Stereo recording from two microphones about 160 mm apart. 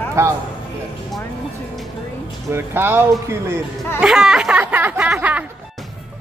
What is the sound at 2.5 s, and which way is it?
Speech, 15° right (ahead or behind).